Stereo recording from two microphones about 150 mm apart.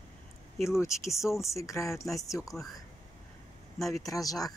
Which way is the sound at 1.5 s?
20° left (ahead or behind).